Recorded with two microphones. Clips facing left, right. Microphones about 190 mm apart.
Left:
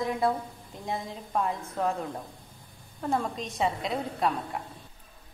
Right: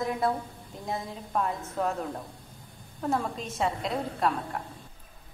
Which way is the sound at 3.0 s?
5° right (ahead or behind).